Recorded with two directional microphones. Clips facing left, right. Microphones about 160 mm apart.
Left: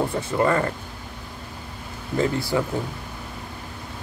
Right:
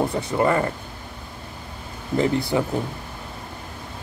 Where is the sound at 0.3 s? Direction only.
20° right (ahead or behind).